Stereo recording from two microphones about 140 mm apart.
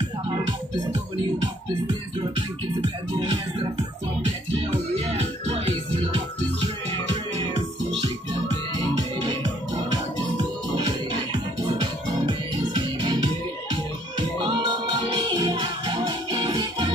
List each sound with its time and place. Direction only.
2.8 s music: 40° right (ahead or behind)
4.6 s music: 50° right (ahead or behind)
11.6 s music: 30° right (ahead or behind)